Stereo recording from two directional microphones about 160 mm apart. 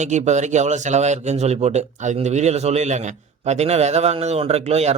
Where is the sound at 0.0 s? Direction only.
45° right (ahead or behind).